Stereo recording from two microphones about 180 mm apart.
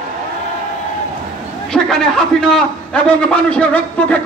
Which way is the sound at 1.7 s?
5° left (ahead or behind).